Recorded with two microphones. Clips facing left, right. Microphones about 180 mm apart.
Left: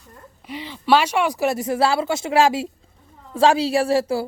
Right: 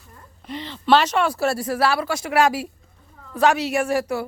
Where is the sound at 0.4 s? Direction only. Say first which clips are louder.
Right 1 dB; 10° left (ahead or behind); by 4.3 s 30° left (ahead or behind).